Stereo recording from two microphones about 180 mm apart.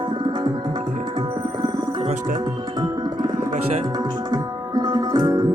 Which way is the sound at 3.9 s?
20° right (ahead or behind).